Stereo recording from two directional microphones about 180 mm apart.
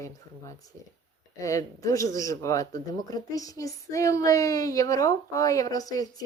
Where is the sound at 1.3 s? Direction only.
20° left (ahead or behind).